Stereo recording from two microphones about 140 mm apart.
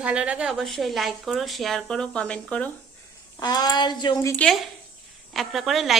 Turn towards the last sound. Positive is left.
turn(degrees=0)  # may be behind; listen again after turning